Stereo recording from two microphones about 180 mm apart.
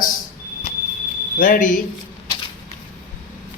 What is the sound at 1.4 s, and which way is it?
Speech, 50° left (ahead or behind).